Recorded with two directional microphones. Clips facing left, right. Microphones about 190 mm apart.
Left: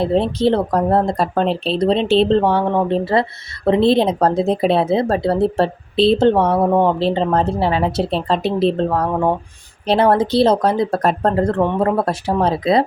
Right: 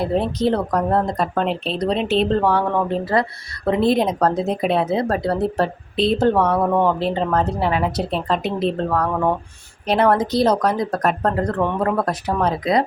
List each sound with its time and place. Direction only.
0.0 s speech: 30° left (ahead or behind)